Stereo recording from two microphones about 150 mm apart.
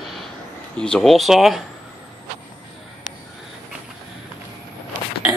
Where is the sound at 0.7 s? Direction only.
5° left (ahead or behind).